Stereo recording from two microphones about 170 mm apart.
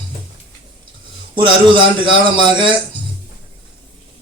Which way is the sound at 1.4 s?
30° right (ahead or behind).